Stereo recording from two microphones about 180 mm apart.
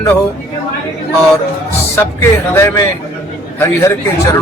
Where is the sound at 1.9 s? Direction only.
15° left (ahead or behind).